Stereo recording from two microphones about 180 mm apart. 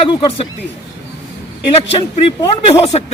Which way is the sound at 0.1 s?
25° left (ahead or behind).